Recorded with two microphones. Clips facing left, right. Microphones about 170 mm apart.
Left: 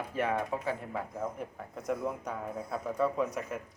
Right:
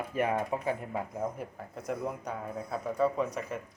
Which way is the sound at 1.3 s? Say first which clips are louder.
Even; centre (ahead or behind).